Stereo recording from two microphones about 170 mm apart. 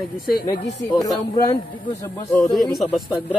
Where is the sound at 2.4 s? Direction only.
Centre (ahead or behind).